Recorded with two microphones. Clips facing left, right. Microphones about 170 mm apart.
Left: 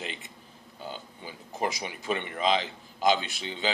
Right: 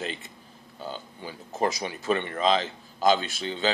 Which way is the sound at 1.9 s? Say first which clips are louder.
Right 5 dB; 15° left (ahead or behind).